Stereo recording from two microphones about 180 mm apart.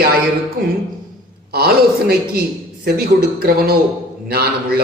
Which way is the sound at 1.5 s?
60° right (ahead or behind).